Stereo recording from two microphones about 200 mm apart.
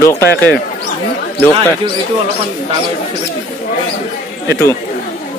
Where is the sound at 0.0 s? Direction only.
15° left (ahead or behind).